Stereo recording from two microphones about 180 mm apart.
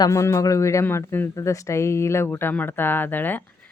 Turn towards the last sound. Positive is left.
turn(degrees=10)  # may be behind; listen again after turning